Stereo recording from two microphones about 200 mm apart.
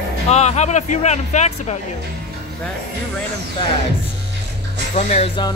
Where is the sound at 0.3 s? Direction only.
35° left (ahead or behind).